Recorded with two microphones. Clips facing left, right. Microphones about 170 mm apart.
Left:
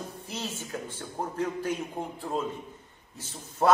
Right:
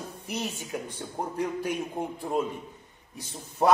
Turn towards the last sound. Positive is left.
turn(degrees=-15)  # may be behind; listen again after turning